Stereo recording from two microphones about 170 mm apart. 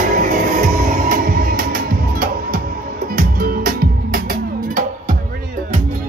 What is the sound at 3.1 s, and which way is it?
Music, 60° right (ahead or behind).